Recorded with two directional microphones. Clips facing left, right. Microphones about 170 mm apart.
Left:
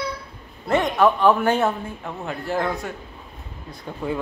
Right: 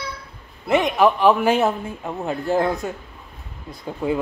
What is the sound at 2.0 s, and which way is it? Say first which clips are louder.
Speech: right 4 dB; 20° right (ahead or behind).